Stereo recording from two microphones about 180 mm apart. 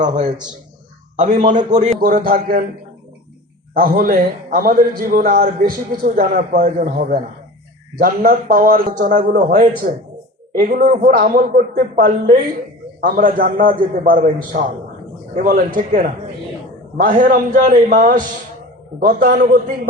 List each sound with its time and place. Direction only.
0.0 s a man's voice: 45° right (ahead or behind)
3.8 s a man's voice: 55° right (ahead or behind)